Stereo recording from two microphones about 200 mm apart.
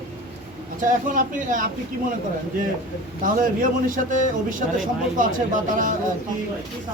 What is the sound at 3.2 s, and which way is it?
Speech, 40° right (ahead or behind).